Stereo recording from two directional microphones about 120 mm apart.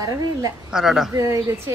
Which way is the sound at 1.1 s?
25° right (ahead or behind).